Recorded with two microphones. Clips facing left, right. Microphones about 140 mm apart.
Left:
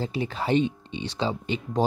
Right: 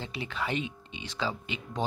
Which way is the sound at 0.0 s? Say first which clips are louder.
Left 6 dB; 35° left (ahead or behind).